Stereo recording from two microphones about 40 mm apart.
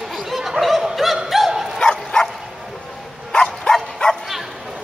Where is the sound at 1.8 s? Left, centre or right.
Centre.